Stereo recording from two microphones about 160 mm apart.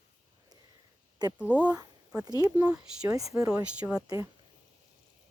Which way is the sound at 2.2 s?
25° right (ahead or behind).